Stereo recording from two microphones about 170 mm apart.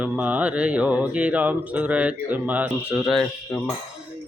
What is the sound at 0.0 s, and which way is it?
Speech, 10° right (ahead or behind).